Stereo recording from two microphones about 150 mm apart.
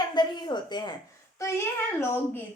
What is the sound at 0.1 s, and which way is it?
Speech, 30° left (ahead or behind).